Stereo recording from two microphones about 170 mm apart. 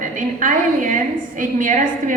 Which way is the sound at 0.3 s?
50° right (ahead or behind).